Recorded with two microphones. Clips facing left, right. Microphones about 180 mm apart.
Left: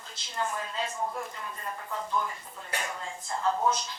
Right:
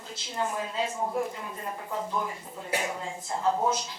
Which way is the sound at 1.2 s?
10° right (ahead or behind).